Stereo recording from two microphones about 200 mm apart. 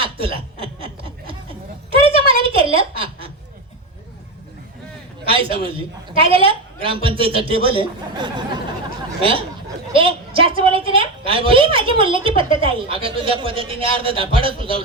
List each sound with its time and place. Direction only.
0.0 s snicker: 25° right (ahead or behind)
1.9 s a sound: 25° right (ahead or behind)
5.2 s a man's voice: 25° right (ahead or behind)
9.9 s a man's voice: 25° right (ahead or behind)